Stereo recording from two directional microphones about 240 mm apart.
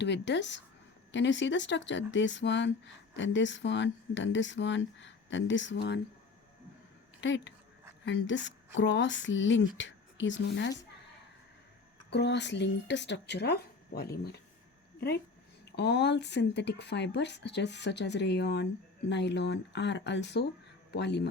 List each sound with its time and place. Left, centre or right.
0.0 s speech: left
7.2 s a woman's voice: left
12.1 s speech: left
15.7 s speech: left